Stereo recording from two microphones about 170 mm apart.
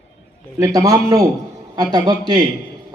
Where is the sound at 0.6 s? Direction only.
20° right (ahead or behind).